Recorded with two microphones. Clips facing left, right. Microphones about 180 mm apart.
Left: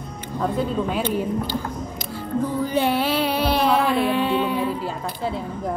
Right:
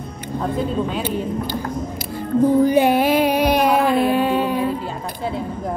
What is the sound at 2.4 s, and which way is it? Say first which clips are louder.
Music: right 12 dB; 50° right (ahead or behind).